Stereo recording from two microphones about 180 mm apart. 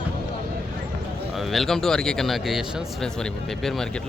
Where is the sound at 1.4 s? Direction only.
Centre (ahead or behind).